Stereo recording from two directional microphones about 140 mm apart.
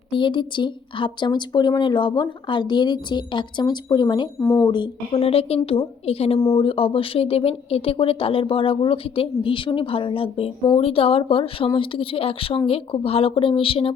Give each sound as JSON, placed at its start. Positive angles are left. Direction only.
{"t": 0.1, "sound": "speech", "side_deg": 35}
{"t": 4.4, "sound": "speech", "side_deg": 20}
{"t": 4.6, "sound": "speech", "side_deg": 35}
{"t": 5.1, "sound": "a woman's voice", "side_deg": 45}